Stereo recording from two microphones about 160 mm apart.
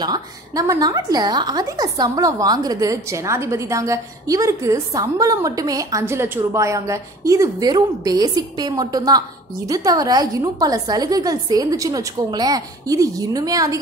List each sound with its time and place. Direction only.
0.0 s a woman's voice: 25° right (ahead or behind)